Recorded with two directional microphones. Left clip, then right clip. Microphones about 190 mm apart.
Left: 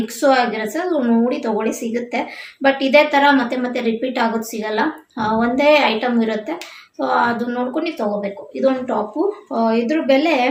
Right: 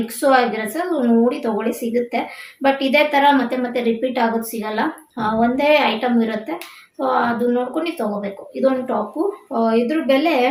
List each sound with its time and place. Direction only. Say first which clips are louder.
0.2 s a woman's voice: even; 15° left (ahead or behind)